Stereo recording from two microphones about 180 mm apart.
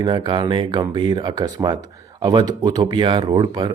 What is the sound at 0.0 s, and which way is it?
Speech, 25° right (ahead or behind).